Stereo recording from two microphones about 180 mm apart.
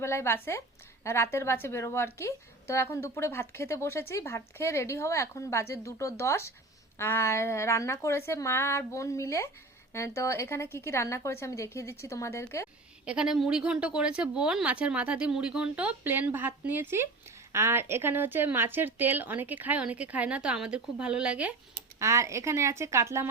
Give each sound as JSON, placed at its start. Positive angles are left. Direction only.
{"t": 0.0, "sound": "speech", "side_deg": 15}
{"t": 13.1, "sound": "speech", "side_deg": -5}
{"t": 21.9, "sound": "speech", "side_deg": -15}